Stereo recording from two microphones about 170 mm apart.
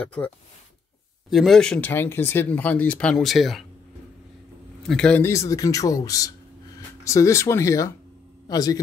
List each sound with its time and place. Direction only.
0.0 s speech: 10° left (ahead or behind)
1.3 s speech: centre (ahead or behind)
4.8 s speech: 5° left (ahead or behind); by 8.7 s 20° left (ahead or behind)